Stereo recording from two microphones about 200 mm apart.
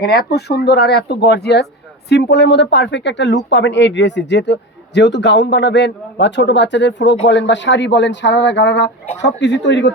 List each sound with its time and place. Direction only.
0.0 s speech: 55° left (ahead or behind)